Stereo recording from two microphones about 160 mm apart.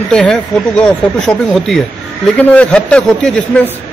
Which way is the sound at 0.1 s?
5° left (ahead or behind).